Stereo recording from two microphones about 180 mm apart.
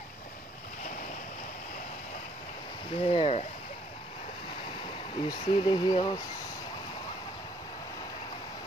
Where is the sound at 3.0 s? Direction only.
30° left (ahead or behind).